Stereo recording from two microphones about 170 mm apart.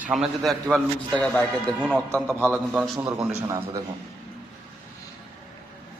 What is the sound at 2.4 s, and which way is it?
A man's voice, 10° right (ahead or behind).